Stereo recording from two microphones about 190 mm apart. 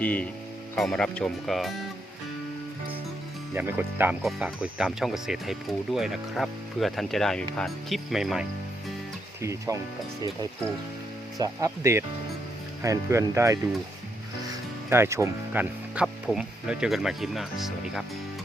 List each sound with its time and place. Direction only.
0.0 s speech: 5° left (ahead or behind)
3.5 s speech: 10° right (ahead or behind)
9.4 s speech: 15° right (ahead or behind)
11.3 s speech: 15° right (ahead or behind)
14.8 s speech: 15° right (ahead or behind)